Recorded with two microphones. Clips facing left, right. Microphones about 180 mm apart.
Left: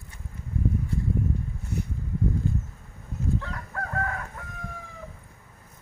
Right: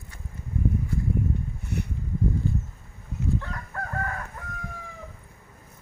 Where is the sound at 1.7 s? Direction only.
70° right (ahead or behind).